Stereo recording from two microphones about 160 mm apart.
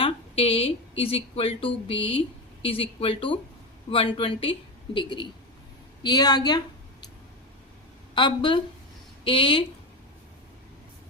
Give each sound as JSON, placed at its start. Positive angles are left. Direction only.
{"t": 0.0, "sound": "a woman's voice", "side_deg": 35}
{"t": 8.1, "sound": "a man's voice", "side_deg": 30}